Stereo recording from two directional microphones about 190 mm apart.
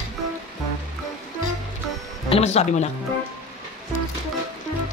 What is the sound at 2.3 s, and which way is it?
Speech, 35° left (ahead or behind).